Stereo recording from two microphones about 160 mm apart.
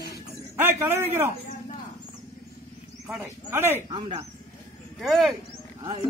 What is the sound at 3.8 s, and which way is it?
Speech, 30° right (ahead or behind).